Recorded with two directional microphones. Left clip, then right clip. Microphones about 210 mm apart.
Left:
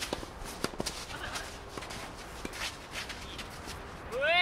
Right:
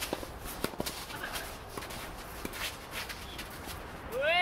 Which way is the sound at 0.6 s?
15° left (ahead or behind).